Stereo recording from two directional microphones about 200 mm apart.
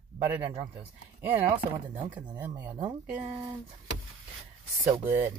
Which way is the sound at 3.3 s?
20° right (ahead or behind).